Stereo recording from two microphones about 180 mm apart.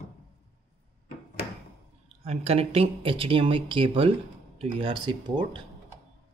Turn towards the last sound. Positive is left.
turn(degrees=-25)  # may be behind; listen again after turning